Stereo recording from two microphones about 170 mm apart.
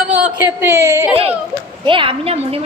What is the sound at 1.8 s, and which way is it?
Speech, 30° right (ahead or behind).